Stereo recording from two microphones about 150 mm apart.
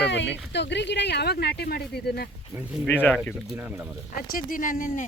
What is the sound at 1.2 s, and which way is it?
Speech, 90° left.